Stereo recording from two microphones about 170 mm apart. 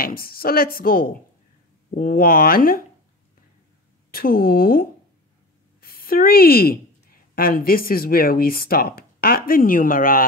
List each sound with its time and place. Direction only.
0.0 s a woman's voice: 60° left (ahead or behind)
4.1 s a woman's voice: 60° left (ahead or behind)